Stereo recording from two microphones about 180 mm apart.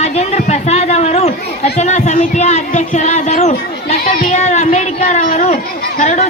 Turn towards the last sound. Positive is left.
turn(degrees=40)  # may be behind; listen again after turning